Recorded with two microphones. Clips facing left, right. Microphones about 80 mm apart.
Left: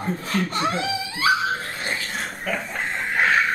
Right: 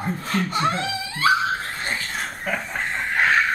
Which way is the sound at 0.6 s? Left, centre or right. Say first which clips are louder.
Right 1 dB; centre.